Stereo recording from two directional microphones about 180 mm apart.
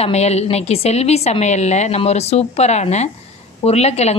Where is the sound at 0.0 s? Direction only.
35° left (ahead or behind).